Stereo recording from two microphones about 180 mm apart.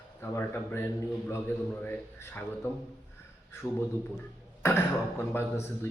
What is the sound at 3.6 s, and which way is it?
A man's voice, 10° left (ahead or behind).